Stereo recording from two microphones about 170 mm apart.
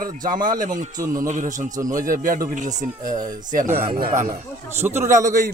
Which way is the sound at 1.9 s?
55° right (ahead or behind).